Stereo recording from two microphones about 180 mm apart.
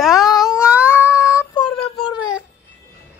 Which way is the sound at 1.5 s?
30° left (ahead or behind).